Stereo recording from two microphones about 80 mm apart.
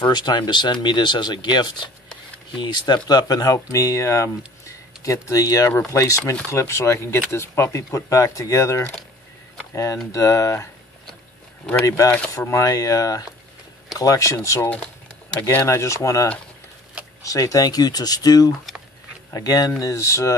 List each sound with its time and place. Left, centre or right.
0.0 s speech: left
10.1 s speech: left
12.4 s speech: left
12.6 s speech: left